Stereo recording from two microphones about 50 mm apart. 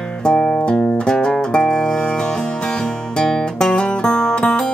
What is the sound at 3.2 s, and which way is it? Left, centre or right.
Music, centre.